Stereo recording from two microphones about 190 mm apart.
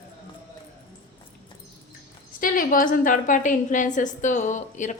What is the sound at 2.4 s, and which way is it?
A woman's voice, 45° left (ahead or behind).